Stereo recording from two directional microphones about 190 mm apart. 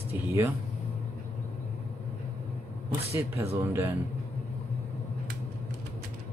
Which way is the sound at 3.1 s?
10° right (ahead or behind).